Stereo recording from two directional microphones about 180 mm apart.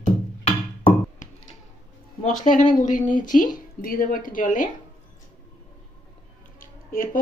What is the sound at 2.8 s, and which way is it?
Speech, 45° left (ahead or behind).